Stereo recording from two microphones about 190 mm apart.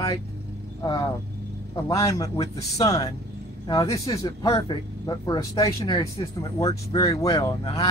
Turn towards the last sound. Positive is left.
turn(degrees=25)  # may be behind; listen again after turning